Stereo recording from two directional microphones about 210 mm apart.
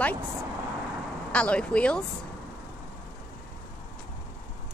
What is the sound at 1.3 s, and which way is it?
Speech, 5° left (ahead or behind).